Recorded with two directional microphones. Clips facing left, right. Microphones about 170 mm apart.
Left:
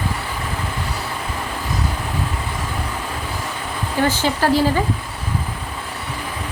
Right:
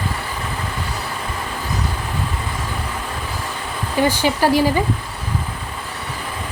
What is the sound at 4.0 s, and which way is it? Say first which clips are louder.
Speech: right 2 dB; 10° right (ahead or behind).